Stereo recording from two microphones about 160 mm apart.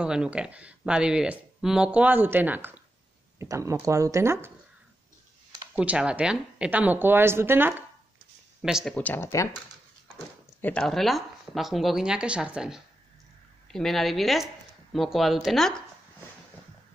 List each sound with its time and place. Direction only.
0.0 s speech: 5° right (ahead or behind)
5.8 s speech: 5° right (ahead or behind)
8.6 s speech: 5° right (ahead or behind)
8.9 s speech: 10° left (ahead or behind)
10.6 s speech: 5° left (ahead or behind)